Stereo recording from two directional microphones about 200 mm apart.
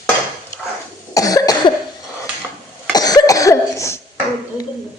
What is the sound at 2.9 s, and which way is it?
Cough, 20° left (ahead or behind).